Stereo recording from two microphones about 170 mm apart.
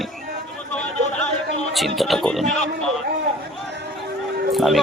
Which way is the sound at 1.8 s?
Centre (ahead or behind).